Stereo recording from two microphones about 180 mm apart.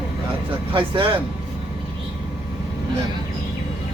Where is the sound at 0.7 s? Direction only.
30° right (ahead or behind).